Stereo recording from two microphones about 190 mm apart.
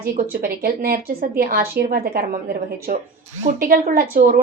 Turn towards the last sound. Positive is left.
turn(degrees=-50)  # may be behind; listen again after turning